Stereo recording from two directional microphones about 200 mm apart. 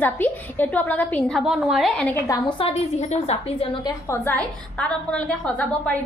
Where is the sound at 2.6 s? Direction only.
30° left (ahead or behind).